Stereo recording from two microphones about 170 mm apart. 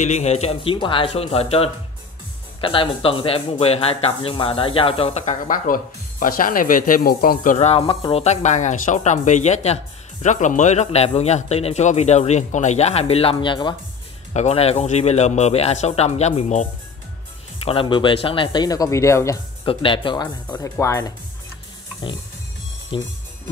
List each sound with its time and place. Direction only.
0.0 s speech: 40° left (ahead or behind)
7.5 s speech: 40° left (ahead or behind)
14.3 s speech: 40° left (ahead or behind)
17.6 s speech: 30° left (ahead or behind)
19.6 s speech: 30° left (ahead or behind)
20.5 s speech: 15° left (ahead or behind)
22.9 s speech: 30° left (ahead or behind)